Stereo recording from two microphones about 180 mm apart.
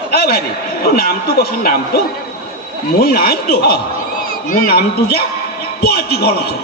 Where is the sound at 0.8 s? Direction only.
60° left (ahead or behind).